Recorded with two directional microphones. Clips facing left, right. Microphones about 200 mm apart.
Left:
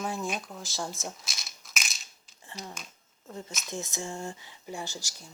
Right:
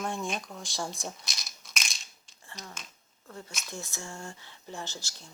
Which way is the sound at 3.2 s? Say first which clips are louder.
Left 3 dB; 20° left (ahead or behind).